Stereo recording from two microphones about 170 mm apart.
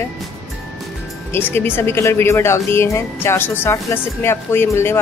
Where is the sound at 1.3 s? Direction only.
10° left (ahead or behind).